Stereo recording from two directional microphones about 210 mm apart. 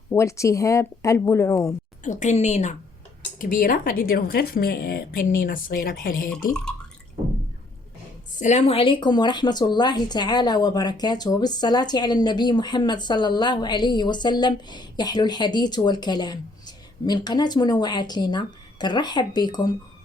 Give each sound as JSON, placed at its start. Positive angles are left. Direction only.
{"t": 0.1, "sound": "speech", "side_deg": 15}
{"t": 2.0, "sound": "a woman's voice", "side_deg": 35}
{"t": 8.4, "sound": "a woman's voice", "side_deg": 35}